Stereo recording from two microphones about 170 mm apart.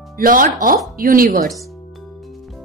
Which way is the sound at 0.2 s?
55° right (ahead or behind).